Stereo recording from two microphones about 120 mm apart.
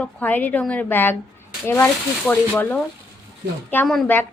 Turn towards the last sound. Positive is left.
turn(degrees=15)  # may be behind; listen again after turning